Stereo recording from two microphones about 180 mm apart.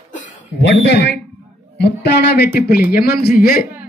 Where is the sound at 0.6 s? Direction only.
70° left (ahead or behind).